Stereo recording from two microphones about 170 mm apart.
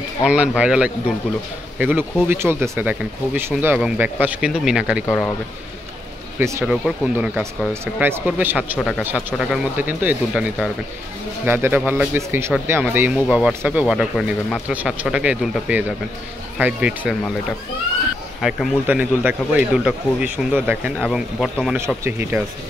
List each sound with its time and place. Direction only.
0.2 s speech: 5° right (ahead or behind)
5.0 s speech: 15° left (ahead or behind)
6.6 s speech: 5° right (ahead or behind)
8.7 s speech: centre (ahead or behind)
18.4 s speech: 5° right (ahead or behind)
21.0 s speech: centre (ahead or behind)
21.7 s speech: 15° right (ahead or behind)